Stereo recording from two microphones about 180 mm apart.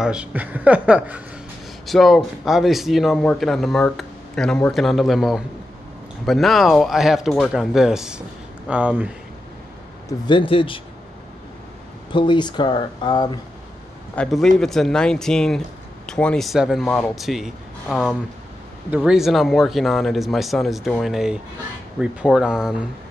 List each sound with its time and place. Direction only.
0.0 s a man's voice: 5° right (ahead or behind)
10.0 s speech: 25° left (ahead or behind)
12.1 s speech: 25° left (ahead or behind)
14.1 s a man's voice: 5° left (ahead or behind)